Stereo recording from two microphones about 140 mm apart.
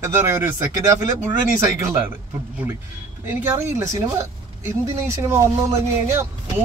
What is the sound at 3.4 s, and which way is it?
Speech, 20° right (ahead or behind).